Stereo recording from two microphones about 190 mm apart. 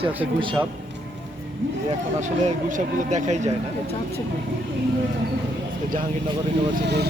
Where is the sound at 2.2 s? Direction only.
40° right (ahead or behind).